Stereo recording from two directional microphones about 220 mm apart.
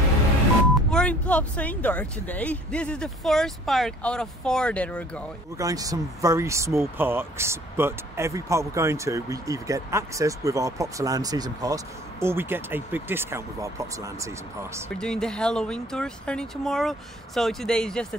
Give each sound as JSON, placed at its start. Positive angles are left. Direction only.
{"t": 0.8, "sound": "speech", "side_deg": 5}
{"t": 5.6, "sound": "speech", "side_deg": -15}
{"t": 15.0, "sound": "speech", "side_deg": 5}